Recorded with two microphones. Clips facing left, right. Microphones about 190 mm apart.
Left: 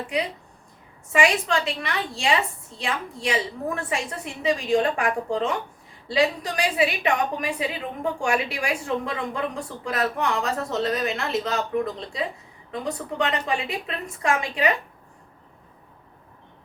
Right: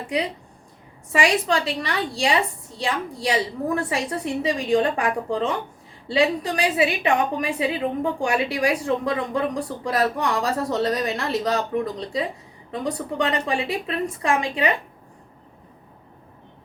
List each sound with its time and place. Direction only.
1.1 s a woman's voice: 35° right (ahead or behind)